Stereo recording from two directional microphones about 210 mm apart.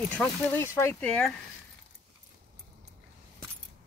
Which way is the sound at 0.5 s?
10° left (ahead or behind).